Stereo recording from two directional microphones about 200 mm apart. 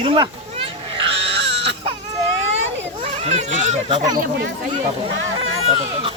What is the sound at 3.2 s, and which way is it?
Speech, 30° right (ahead or behind).